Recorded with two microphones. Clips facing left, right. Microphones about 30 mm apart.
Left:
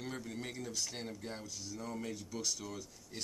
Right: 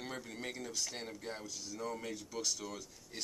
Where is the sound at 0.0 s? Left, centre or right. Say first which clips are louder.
Even; centre.